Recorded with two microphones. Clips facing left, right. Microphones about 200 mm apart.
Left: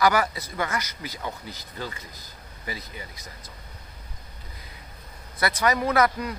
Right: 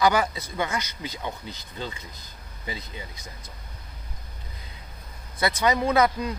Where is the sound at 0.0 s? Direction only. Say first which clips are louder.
Even; 20° right (ahead or behind).